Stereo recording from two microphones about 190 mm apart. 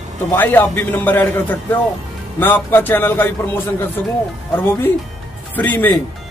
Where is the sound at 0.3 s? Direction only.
10° left (ahead or behind).